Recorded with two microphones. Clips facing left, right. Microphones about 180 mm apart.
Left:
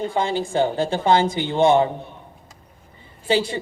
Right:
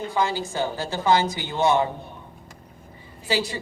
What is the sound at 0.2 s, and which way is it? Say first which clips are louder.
A woman's voice: left 4 dB; 30° left (ahead or behind).